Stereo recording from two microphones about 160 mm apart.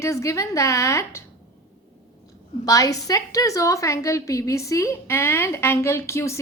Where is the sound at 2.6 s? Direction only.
20° left (ahead or behind).